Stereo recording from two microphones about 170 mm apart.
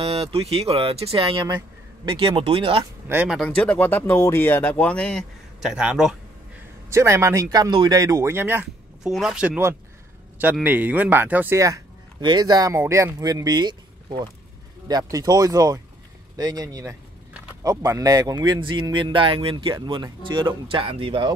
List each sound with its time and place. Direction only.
0.0 s speech: 35° right (ahead or behind)
3.1 s speech: 10° right (ahead or behind)
3.3 s speech: 5° left (ahead or behind)
6.9 s speech: 15° right (ahead or behind)
9.0 s speech: centre (ahead or behind); by 21.4 s 30° right (ahead or behind)